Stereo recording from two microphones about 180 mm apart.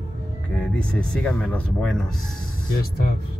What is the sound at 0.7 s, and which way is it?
Speech, 5° left (ahead or behind).